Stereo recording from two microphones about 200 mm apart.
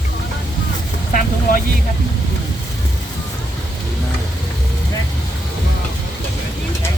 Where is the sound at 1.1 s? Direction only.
45° left (ahead or behind).